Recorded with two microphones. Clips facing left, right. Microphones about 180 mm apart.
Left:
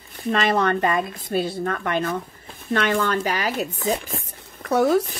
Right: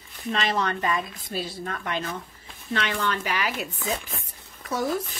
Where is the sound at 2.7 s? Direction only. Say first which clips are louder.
Left 6 dB; 45° left (ahead or behind).